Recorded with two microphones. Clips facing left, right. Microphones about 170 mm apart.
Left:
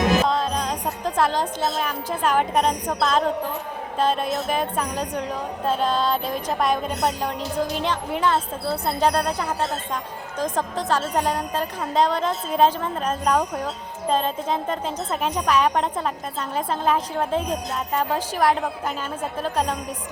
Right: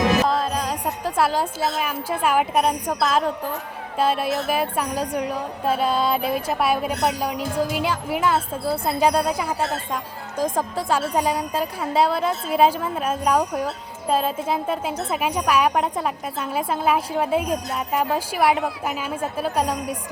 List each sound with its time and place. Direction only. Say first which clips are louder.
0.3 s a woman's voice: right 1 dB; 5° right (ahead or behind)